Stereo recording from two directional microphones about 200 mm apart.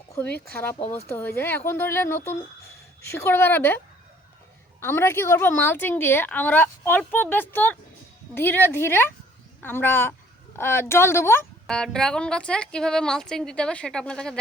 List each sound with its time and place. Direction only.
0.2 s a woman's voice: 10° left (ahead or behind)
0.8 s speech: 30° left (ahead or behind)
1.0 s a woman's voice: 10° left (ahead or behind)
4.8 s a woman's voice: 10° left (ahead or behind)